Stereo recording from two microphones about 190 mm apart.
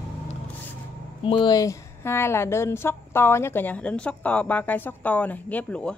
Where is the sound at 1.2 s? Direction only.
25° left (ahead or behind).